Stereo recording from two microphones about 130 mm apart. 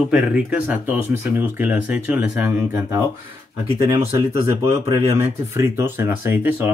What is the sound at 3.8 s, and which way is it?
Speech, 25° right (ahead or behind).